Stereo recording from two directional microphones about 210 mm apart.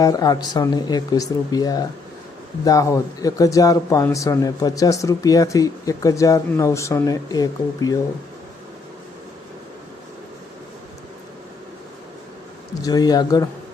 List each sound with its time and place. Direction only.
0.0 s speech: 15° left (ahead or behind)
12.8 s speech: 20° left (ahead or behind)